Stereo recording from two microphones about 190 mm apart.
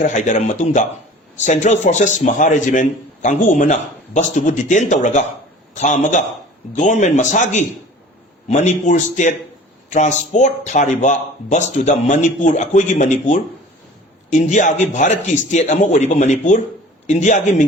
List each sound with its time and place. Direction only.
0.0 s a man's voice: 40° left (ahead or behind)